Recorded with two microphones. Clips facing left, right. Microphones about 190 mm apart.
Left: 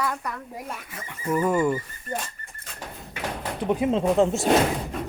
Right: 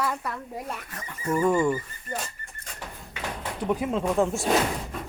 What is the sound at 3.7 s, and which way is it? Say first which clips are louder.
Speech: left 4 dB; 20° left (ahead or behind).